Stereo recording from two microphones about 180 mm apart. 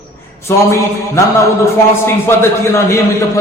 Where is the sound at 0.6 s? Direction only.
15° left (ahead or behind).